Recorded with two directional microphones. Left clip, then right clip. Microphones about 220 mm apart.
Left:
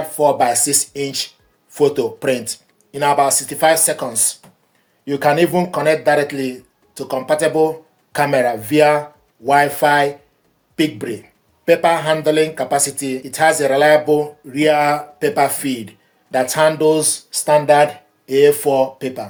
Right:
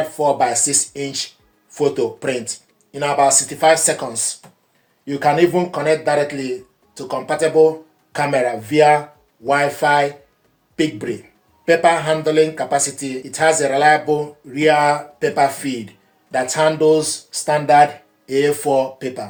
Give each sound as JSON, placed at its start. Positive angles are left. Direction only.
{"t": 0.2, "sound": "speech", "side_deg": 50}